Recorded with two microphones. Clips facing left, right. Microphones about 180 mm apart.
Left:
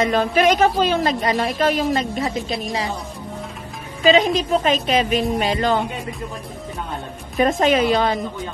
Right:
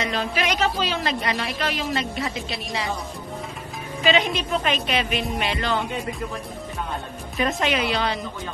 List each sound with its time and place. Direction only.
0.0 s a woman's voice: 50° left (ahead or behind)
4.0 s a woman's voice: 40° left (ahead or behind)
7.5 s speech: 40° left (ahead or behind)